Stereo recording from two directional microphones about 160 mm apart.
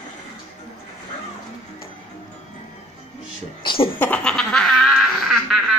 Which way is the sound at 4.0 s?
10° left (ahead or behind).